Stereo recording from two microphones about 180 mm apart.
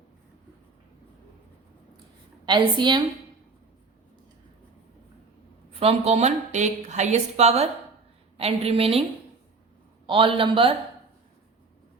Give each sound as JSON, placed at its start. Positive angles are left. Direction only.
{"t": 2.5, "sound": "a man's voice", "side_deg": -25}
{"t": 5.8, "sound": "a woman's voice", "side_deg": -35}
{"t": 10.1, "sound": "a man's voice", "side_deg": -30}